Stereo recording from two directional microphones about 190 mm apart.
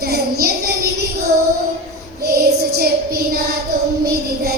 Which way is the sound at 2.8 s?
55° right (ahead or behind).